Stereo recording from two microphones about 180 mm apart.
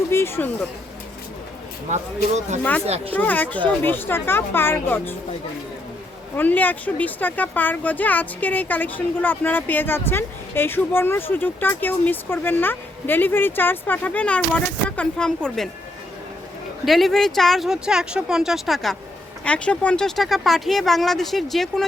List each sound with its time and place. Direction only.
0.1 s speech: 15° left (ahead or behind)
1.9 s speech: 40° right (ahead or behind)
3.1 s a child's voice: 10° left (ahead or behind)
6.3 s a child's voice: 10° left (ahead or behind)
16.8 s speech: centre (ahead or behind)